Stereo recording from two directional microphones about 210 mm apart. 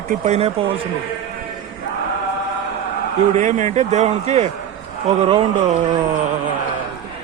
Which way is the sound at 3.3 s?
35° right (ahead or behind).